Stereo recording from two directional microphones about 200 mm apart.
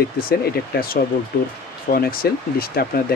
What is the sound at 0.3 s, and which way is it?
Speech, 45° left (ahead or behind).